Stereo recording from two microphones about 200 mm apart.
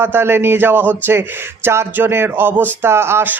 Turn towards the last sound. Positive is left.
turn(degrees=-10)  # may be behind; listen again after turning